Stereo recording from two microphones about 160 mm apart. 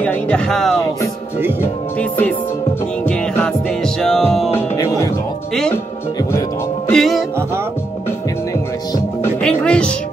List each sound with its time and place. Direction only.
0.0 s speech: 10° left (ahead or behind)
1.6 s music: 10° left (ahead or behind)
4.6 s music: 20° left (ahead or behind)
6.9 s music: centre (ahead or behind)
9.4 s speech: 5° left (ahead or behind)